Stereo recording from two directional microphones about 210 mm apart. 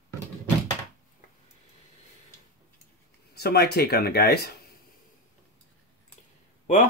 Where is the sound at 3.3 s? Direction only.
50° left (ahead or behind).